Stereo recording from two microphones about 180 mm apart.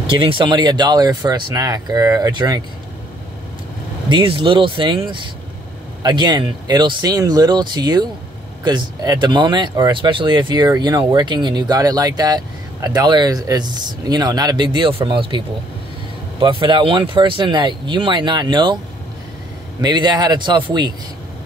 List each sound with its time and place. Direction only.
0.0 s speech: 30° right (ahead or behind)
4.1 s speech: 30° right (ahead or behind)
19.8 s speech: 25° right (ahead or behind)